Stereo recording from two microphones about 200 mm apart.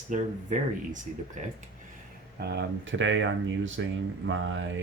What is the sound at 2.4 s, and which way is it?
Speech, 55° right (ahead or behind).